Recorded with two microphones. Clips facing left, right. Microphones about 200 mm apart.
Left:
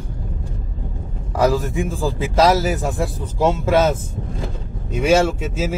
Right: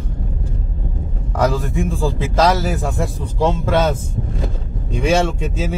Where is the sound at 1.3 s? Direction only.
5° left (ahead or behind).